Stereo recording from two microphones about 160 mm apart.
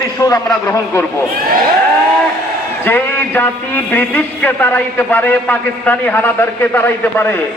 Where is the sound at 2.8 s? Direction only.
15° left (ahead or behind).